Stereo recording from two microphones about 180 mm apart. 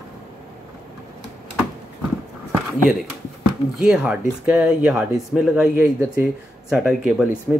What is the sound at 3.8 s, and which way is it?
Speech, 5° right (ahead or behind).